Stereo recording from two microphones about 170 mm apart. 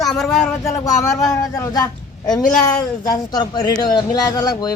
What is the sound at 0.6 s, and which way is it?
Speech, 20° left (ahead or behind).